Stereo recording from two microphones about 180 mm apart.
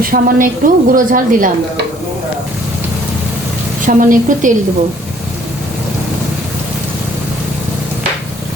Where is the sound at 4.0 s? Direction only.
50° right (ahead or behind).